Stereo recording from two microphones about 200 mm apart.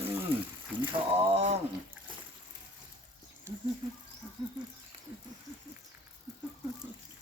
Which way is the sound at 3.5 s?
15° right (ahead or behind).